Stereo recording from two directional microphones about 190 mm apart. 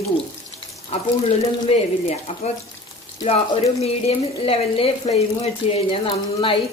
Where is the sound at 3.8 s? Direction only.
30° left (ahead or behind).